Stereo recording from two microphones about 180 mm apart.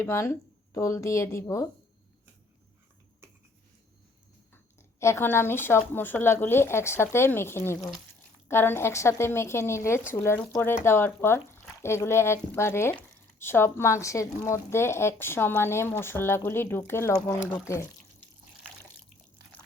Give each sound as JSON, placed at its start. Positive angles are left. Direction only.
{"t": 0.0, "sound": "speech", "side_deg": 15}
{"t": 4.5, "sound": "speech", "side_deg": 15}